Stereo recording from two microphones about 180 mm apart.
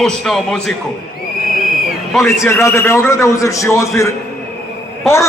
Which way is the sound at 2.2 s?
15° left (ahead or behind).